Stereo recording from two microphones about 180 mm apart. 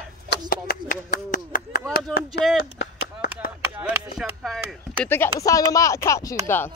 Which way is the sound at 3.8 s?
10° right (ahead or behind).